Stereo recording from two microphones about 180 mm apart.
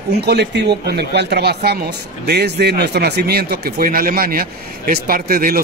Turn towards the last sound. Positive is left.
turn(degrees=-55)  # may be behind; listen again after turning